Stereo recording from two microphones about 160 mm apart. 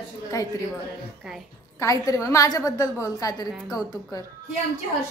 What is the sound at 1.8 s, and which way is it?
A woman's voice, 20° left (ahead or behind).